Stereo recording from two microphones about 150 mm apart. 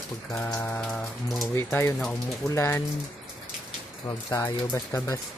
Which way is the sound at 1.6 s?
15° left (ahead or behind).